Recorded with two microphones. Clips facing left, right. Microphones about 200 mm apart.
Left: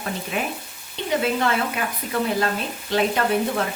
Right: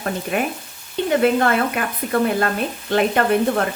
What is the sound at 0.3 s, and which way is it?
A woman's voice, 55° right (ahead or behind).